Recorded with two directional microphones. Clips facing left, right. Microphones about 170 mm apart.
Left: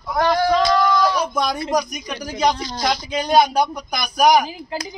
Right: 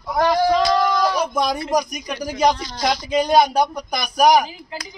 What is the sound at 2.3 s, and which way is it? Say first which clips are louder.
Speech: right 1 dB; 5° right (ahead or behind).